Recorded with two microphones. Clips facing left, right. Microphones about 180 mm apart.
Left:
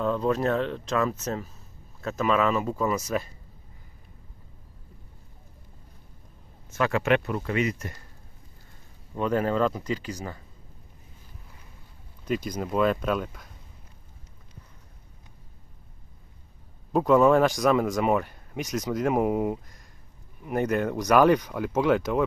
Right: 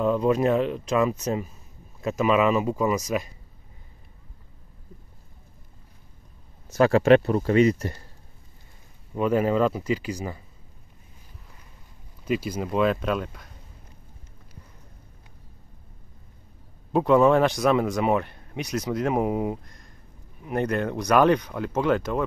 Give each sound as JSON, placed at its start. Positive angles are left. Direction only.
{"t": 0.0, "sound": "speech", "side_deg": -10}
{"t": 6.7, "sound": "speech", "side_deg": -35}
{"t": 9.1, "sound": "speech", "side_deg": -10}
{"t": 12.3, "sound": "speech", "side_deg": -5}
{"t": 16.9, "sound": "speech", "side_deg": 0}